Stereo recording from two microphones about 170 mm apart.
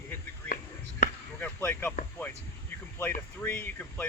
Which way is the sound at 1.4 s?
10° left (ahead or behind).